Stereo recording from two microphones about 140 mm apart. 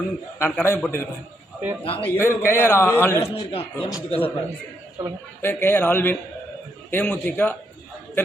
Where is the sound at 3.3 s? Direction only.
40° left (ahead or behind).